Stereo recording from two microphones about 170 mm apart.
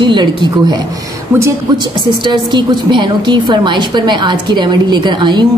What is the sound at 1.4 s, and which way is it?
Speech, 15° right (ahead or behind).